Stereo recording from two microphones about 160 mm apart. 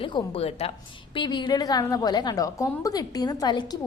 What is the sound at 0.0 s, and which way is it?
A woman's voice, 35° left (ahead or behind).